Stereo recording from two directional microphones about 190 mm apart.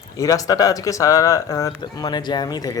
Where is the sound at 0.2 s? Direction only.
20° left (ahead or behind).